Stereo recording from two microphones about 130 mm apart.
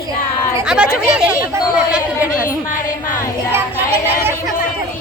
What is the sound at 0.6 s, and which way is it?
A woman's voice, 5° right (ahead or behind).